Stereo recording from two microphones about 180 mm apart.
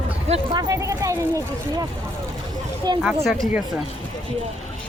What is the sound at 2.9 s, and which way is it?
Speech, 25° right (ahead or behind).